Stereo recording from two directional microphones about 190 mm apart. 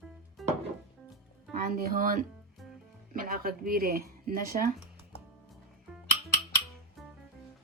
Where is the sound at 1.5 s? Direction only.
50° right (ahead or behind).